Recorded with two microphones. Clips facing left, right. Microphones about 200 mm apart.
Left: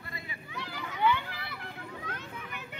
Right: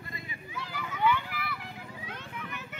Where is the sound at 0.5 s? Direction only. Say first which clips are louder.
Even; 20° left (ahead or behind).